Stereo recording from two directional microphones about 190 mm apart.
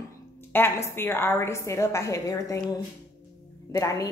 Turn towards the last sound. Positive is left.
turn(degrees=15)  # may be behind; listen again after turning